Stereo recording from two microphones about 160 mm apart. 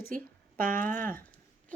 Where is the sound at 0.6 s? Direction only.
55° right (ahead or behind).